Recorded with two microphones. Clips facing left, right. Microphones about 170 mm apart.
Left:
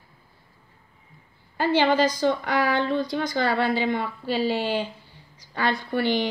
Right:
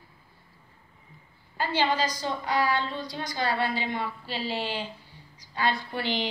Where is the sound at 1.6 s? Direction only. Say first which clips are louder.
Left 6 dB; 55° left (ahead or behind).